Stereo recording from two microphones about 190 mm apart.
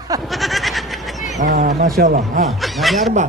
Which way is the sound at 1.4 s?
40° right (ahead or behind).